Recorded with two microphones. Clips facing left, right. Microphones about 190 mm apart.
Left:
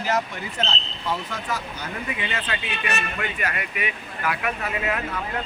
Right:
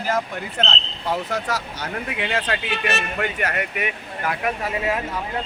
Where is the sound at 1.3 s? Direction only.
80° right.